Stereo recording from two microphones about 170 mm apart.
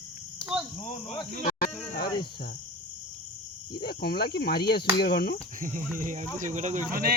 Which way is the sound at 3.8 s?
70° left (ahead or behind).